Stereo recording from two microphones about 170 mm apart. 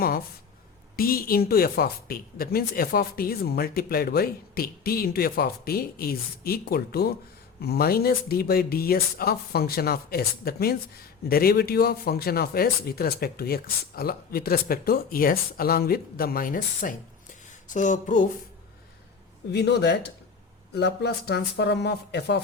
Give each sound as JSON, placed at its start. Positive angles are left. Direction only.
{"t": 0.9, "sound": "speech", "side_deg": 60}
{"t": 19.5, "sound": "speech", "side_deg": 80}